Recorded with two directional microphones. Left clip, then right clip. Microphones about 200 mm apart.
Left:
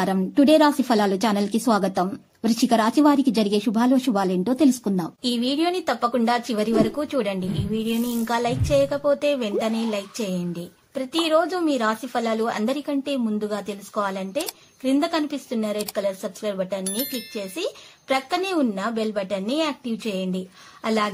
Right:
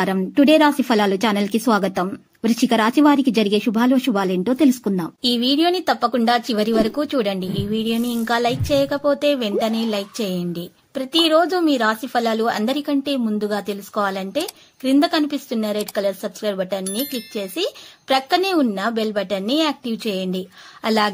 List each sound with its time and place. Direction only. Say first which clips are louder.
0.0 s speech: right 3 dB; 15° right (ahead or behind)
16.8 s speech: right 3 dB; centre (ahead or behind)
17.3 s speech: right 4 dB; 25° right (ahead or behind)